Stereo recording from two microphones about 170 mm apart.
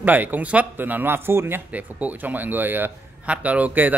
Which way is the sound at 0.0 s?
10° right (ahead or behind).